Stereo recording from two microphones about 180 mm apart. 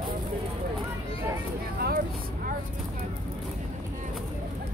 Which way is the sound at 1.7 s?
60° right (ahead or behind).